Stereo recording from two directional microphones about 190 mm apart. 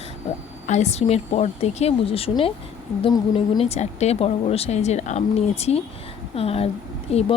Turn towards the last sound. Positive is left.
turn(degrees=30)  # may be behind; listen again after turning